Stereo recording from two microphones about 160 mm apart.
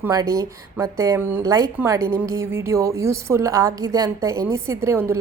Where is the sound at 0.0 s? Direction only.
20° right (ahead or behind).